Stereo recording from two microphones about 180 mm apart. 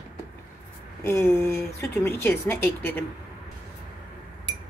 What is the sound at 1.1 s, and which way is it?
Speech, 15° left (ahead or behind).